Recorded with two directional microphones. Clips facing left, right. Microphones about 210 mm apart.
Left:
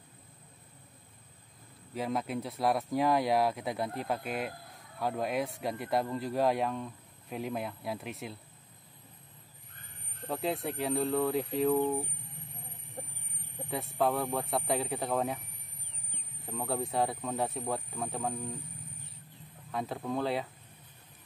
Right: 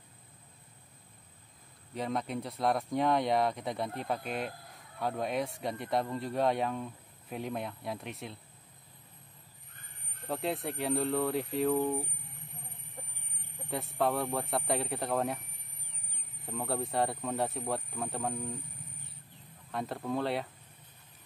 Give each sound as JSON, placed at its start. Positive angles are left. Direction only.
{"t": 2.0, "sound": "speech", "side_deg": 5}
{"t": 10.2, "sound": "speech", "side_deg": 0}
{"t": 13.7, "sound": "speech", "side_deg": 0}
{"t": 16.4, "sound": "speech", "side_deg": 0}
{"t": 19.7, "sound": "speech", "side_deg": 0}